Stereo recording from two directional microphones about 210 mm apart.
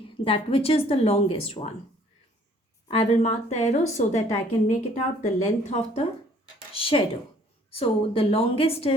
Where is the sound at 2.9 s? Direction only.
30° left (ahead or behind).